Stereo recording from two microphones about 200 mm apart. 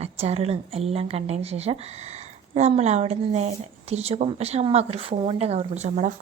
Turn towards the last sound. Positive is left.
turn(degrees=-35)  # may be behind; listen again after turning